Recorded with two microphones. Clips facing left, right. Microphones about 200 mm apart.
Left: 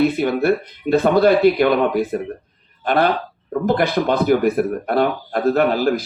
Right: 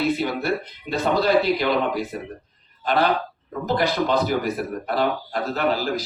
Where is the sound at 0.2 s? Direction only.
55° left (ahead or behind).